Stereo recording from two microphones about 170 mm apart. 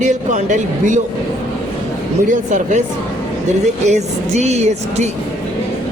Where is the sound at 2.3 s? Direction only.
50° right (ahead or behind).